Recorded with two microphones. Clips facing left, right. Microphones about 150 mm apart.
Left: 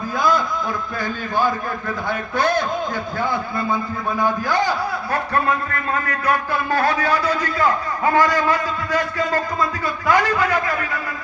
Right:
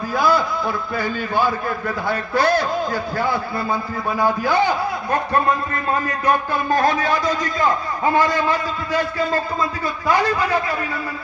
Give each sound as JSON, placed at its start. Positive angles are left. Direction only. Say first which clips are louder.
{"t": 0.2, "sound": "a sound", "louder": "right 1 dB", "side_deg": -5}
{"t": 0.9, "sound": "a man's voice", "louder": "right 1 dB", "side_deg": -10}
{"t": 5.9, "sound": "speech", "louder": "right 2 dB", "side_deg": -30}
{"t": 6.7, "sound": "a man's voice", "louder": "right 1 dB", "side_deg": -15}